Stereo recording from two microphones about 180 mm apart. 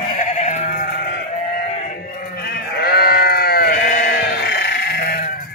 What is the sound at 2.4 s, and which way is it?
Sheep, 60° left (ahead or behind).